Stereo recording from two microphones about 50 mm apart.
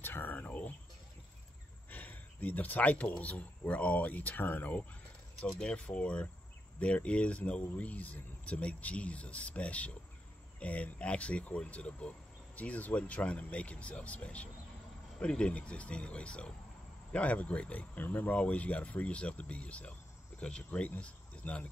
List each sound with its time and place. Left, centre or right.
0.0 s whispering: left
1.9 s speech: left
5.6 s speech: centre